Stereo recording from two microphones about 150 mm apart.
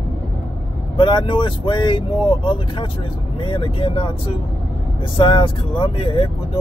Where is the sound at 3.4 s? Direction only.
35° left (ahead or behind).